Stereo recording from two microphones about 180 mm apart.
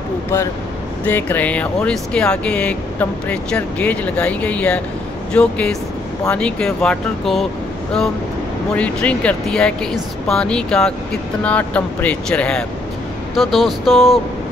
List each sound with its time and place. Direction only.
1.0 s speech: 10° left (ahead or behind)
8.7 s speech: 5° left (ahead or behind)